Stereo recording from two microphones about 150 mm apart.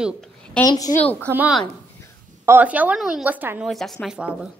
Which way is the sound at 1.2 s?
10° right (ahead or behind).